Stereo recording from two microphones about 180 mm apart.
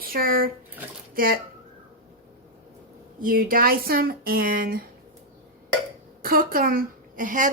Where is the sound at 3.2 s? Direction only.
50° right (ahead or behind).